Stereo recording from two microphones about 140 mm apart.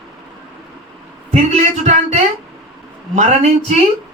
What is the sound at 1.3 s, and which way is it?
Speech, 55° right (ahead or behind).